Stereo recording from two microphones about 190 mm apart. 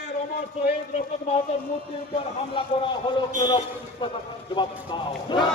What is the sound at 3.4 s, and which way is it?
Speech, 30° left (ahead or behind).